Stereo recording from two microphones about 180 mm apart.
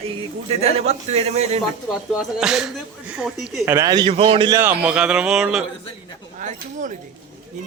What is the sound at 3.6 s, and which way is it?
Speech, 15° right (ahead or behind).